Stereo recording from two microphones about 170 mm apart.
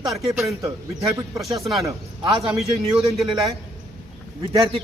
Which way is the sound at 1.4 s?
Centre (ahead or behind).